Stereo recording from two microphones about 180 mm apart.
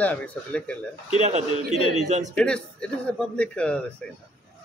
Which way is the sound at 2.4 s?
5° left (ahead or behind).